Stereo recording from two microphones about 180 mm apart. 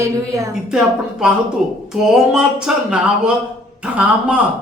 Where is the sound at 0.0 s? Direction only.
15° right (ahead or behind).